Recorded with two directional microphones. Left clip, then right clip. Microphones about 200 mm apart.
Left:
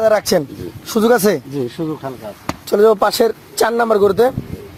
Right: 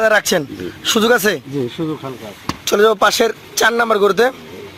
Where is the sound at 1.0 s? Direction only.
15° right (ahead or behind).